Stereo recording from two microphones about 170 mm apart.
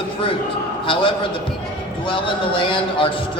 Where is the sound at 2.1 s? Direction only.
30° left (ahead or behind).